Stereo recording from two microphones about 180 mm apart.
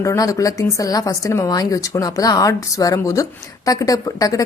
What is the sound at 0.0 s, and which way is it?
Speech, 15° left (ahead or behind).